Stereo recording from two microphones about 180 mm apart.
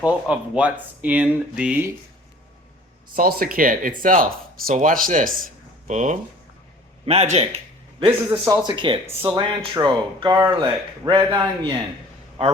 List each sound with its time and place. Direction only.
0.0 s speech: 5° right (ahead or behind)
3.2 s a man's voice: 55° right (ahead or behind); by 7.4 s 35° right (ahead or behind)
8.4 s speech: 25° right (ahead or behind)